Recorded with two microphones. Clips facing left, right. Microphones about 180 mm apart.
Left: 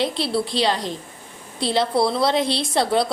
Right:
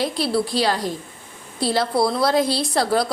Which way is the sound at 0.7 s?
20° left (ahead or behind).